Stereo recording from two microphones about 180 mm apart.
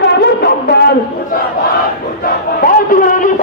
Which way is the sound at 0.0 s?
65° left (ahead or behind).